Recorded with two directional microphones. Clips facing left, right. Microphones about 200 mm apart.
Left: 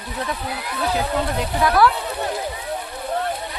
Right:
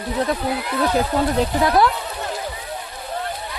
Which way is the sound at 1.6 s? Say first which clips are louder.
Left 1 dB; 20° right (ahead or behind).